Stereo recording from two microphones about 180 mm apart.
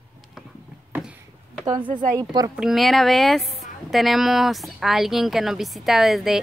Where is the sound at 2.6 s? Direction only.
Centre (ahead or behind).